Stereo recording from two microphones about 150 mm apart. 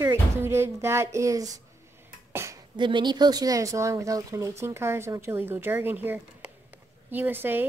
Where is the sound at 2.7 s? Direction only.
30° right (ahead or behind).